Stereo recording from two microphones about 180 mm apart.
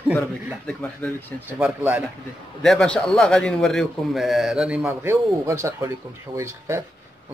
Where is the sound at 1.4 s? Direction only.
10° right (ahead or behind).